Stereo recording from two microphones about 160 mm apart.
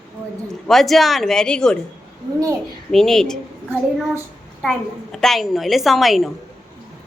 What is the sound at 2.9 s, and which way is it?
Speech, centre (ahead or behind).